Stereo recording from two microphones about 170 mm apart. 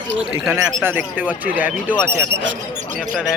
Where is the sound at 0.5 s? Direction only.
15° right (ahead or behind).